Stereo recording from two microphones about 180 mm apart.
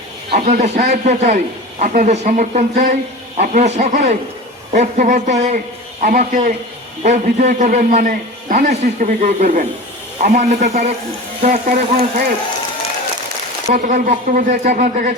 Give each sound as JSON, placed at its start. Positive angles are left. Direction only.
{"t": 0.3, "sound": "a man's voice", "side_deg": -40}
{"t": 13.7, "sound": "speech", "side_deg": -45}